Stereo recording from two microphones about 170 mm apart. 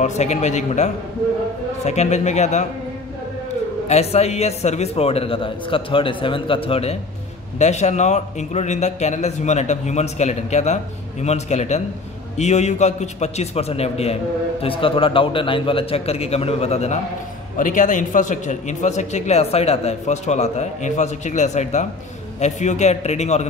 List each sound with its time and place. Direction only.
0.0 s a man's voice: 40° left (ahead or behind)
3.8 s a man's voice: 40° left (ahead or behind)